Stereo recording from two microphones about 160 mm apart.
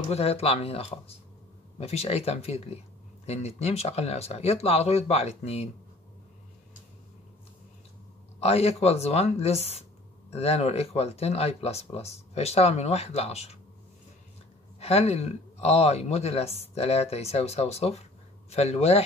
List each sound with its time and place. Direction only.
0.1 s speech: 40° left (ahead or behind)
8.4 s speech: 40° left (ahead or behind)
14.8 s speech: 40° left (ahead or behind)